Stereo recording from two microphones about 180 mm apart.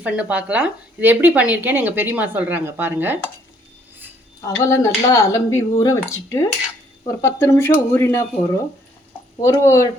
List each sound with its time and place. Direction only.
0.0 s speech: 10° right (ahead or behind)
4.4 s speech: 20° left (ahead or behind)
9.4 s speech: 15° left (ahead or behind)